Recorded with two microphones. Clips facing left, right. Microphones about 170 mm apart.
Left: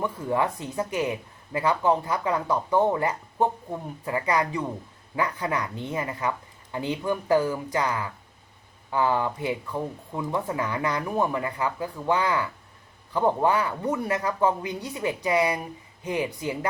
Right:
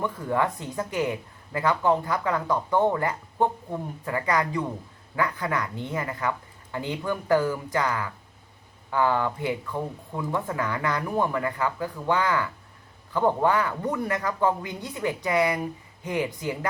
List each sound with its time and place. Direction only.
0.0 s speech: 15° left (ahead or behind)